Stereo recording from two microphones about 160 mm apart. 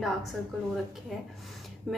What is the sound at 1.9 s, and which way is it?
Speech, centre (ahead or behind).